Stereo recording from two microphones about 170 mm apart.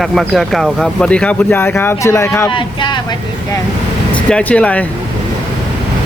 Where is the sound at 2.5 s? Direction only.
30° left (ahead or behind).